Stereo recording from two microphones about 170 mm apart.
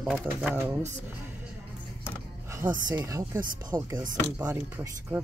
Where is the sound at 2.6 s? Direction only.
50° right (ahead or behind).